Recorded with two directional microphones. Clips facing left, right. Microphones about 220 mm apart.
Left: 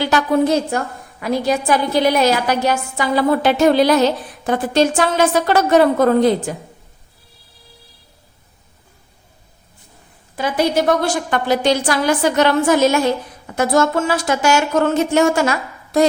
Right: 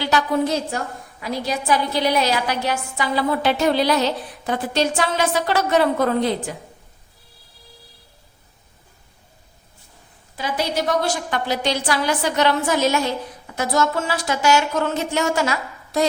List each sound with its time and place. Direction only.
0.0 s a woman's voice: 50° left (ahead or behind)
10.3 s a woman's voice: 50° left (ahead or behind)